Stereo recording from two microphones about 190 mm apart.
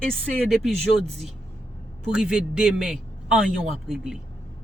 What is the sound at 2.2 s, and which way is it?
A man's voice, 5° right (ahead or behind).